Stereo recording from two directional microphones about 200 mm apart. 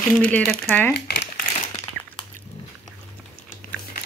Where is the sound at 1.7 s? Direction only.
25° left (ahead or behind).